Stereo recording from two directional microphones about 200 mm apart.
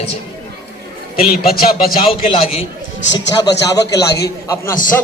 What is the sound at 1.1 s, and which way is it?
Speech, 50° left (ahead or behind).